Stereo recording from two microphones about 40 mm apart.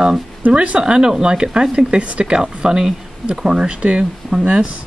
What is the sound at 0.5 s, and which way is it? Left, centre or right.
Speech, right.